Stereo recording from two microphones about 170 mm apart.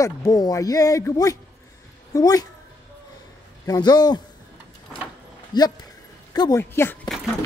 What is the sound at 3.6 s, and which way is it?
Speech, 25° left (ahead or behind).